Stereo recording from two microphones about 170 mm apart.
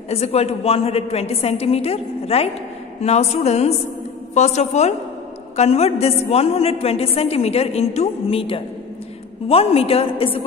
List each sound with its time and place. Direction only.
0.1 s a woman's voice: 35° left (ahead or behind)